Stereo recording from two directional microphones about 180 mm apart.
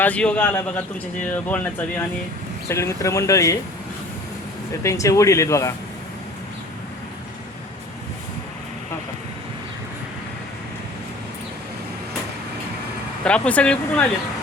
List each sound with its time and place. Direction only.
0.0 s speech: 5° left (ahead or behind)
4.8 s speech: 15° left (ahead or behind)
13.2 s speech: 5° left (ahead or behind)